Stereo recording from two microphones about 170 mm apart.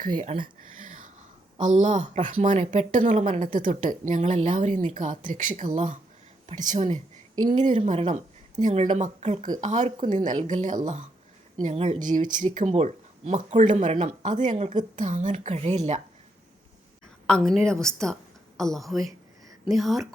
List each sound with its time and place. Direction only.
0.3 s speech: 35° right (ahead or behind)
1.5 s a woman's voice: 45° right (ahead or behind)
17.2 s a woman's voice: 5° left (ahead or behind)